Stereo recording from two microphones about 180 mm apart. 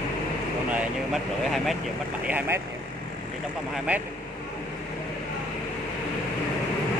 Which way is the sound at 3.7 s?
5° right (ahead or behind).